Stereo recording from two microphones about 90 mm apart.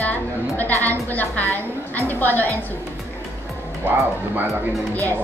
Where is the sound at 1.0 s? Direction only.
20° left (ahead or behind).